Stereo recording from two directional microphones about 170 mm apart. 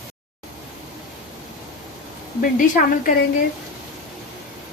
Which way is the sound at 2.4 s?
50° left (ahead or behind).